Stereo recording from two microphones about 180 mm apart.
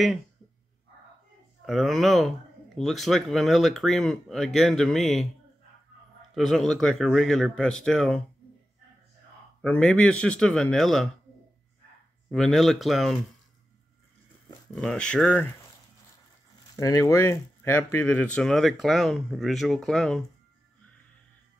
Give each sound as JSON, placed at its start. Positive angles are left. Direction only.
{"t": 1.7, "sound": "speech", "side_deg": 0}
{"t": 6.3, "sound": "speech", "side_deg": 0}
{"t": 9.6, "sound": "speech", "side_deg": 5}
{"t": 12.3, "sound": "speech", "side_deg": 0}
{"t": 14.8, "sound": "speech", "side_deg": 5}
{"t": 16.7, "sound": "speech", "side_deg": 20}